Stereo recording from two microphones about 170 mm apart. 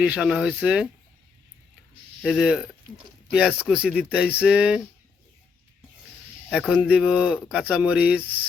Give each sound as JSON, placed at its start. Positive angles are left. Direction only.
{"t": 0.0, "sound": "speech", "side_deg": -5}
{"t": 2.2, "sound": "speech", "side_deg": -5}
{"t": 6.5, "sound": "speech", "side_deg": -5}